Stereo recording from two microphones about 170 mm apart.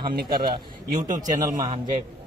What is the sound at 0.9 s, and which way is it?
Speech, 45° right (ahead or behind).